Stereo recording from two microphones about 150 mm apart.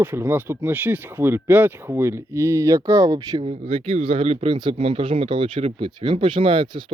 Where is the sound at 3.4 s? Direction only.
40° right (ahead or behind).